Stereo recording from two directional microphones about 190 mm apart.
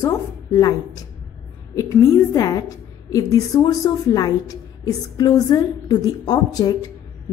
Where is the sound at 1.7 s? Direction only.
15° left (ahead or behind).